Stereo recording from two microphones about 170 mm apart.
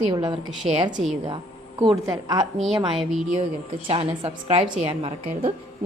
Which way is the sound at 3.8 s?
30° right (ahead or behind).